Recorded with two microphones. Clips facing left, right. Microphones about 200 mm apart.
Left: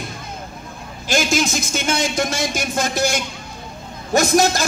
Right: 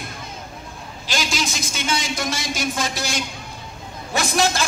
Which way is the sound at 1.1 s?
50° left (ahead or behind).